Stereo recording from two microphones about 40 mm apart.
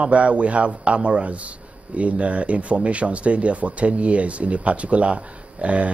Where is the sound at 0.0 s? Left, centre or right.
Right.